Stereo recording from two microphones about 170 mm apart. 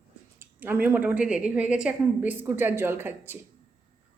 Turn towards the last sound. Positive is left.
turn(degrees=-15)  # may be behind; listen again after turning